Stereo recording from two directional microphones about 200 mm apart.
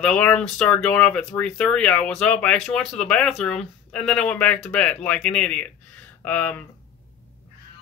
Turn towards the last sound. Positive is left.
turn(degrees=10)  # may be behind; listen again after turning